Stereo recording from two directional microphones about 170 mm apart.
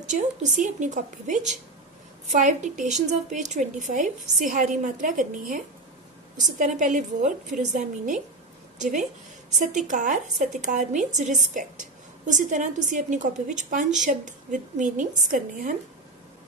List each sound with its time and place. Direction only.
0.0 s a woman's voice: 45° right (ahead or behind)